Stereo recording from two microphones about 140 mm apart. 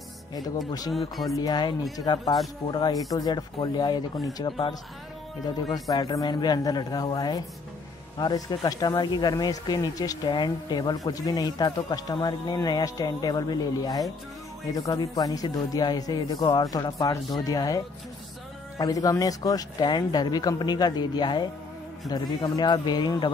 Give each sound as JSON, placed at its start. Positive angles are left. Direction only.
{"t": 0.3, "sound": "speech", "side_deg": 30}
{"t": 0.9, "sound": "speech", "side_deg": 0}
{"t": 1.3, "sound": "speech", "side_deg": 25}
{"t": 5.7, "sound": "speech", "side_deg": 30}